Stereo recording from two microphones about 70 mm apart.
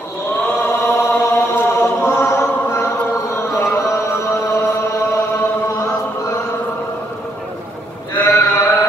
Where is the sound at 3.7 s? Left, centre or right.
Left.